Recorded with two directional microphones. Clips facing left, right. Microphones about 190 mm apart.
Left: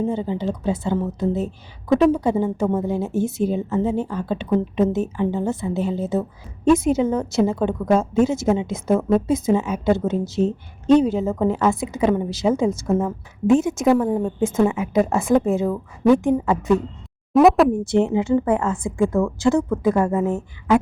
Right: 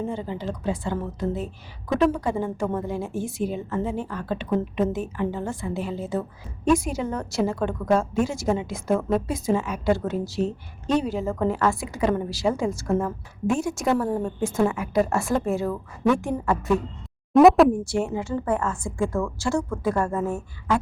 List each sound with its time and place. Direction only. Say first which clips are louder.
0.0 s a woman's voice: left 6 dB; 25° left (ahead or behind)
17.3 s speech: even; centre (ahead or behind)
17.8 s a woman's voice: left 7 dB; 20° left (ahead or behind)